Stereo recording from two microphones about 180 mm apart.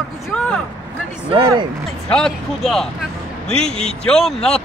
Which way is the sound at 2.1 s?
5° left (ahead or behind).